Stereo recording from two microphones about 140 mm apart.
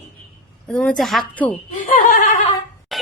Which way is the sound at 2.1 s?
65° left (ahead or behind).